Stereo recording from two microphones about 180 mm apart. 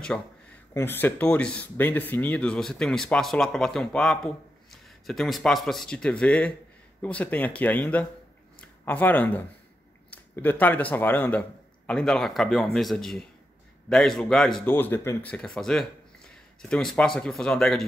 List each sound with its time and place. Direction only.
0.1 s speech: 10° left (ahead or behind)